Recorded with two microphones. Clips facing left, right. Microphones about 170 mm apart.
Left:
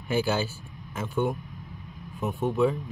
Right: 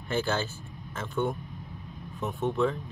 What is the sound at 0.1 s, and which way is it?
Speech, 10° left (ahead or behind).